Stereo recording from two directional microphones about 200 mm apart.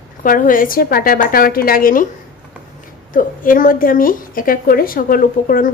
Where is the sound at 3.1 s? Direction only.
45° left (ahead or behind).